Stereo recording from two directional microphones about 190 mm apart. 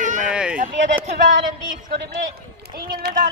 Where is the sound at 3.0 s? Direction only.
55° right (ahead or behind).